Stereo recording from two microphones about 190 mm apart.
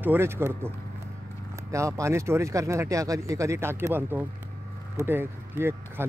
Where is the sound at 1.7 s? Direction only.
15° right (ahead or behind).